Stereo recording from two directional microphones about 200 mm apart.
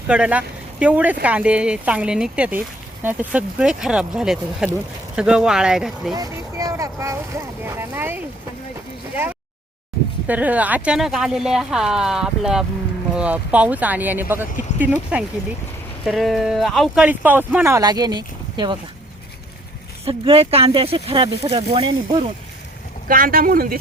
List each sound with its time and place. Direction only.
0.1 s speech: 5° right (ahead or behind)
6.1 s speech: 20° right (ahead or behind)
10.2 s speech: 5° right (ahead or behind)
20.1 s speech: 25° right (ahead or behind)
23.0 s speech: 45° right (ahead or behind)